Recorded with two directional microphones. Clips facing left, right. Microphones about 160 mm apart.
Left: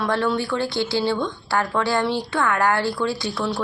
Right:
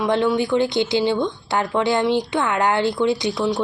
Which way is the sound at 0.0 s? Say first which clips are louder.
Right 3 dB; 15° right (ahead or behind).